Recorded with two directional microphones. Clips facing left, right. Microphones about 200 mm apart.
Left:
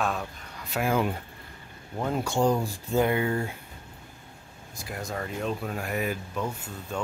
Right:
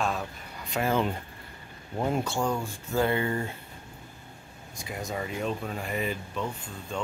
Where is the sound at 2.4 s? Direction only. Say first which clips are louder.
Left 5 dB; 35° left (ahead or behind).